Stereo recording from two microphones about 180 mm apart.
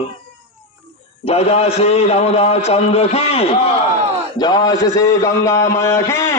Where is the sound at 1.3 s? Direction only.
35° left (ahead or behind).